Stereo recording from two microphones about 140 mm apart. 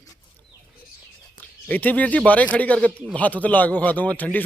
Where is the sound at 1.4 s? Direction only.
10° left (ahead or behind).